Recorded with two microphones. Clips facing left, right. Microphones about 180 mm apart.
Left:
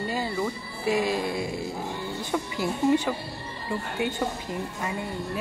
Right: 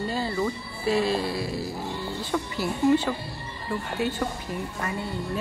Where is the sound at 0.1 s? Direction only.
10° left (ahead or behind).